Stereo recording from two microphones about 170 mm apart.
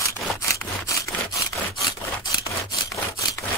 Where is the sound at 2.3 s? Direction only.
20° left (ahead or behind).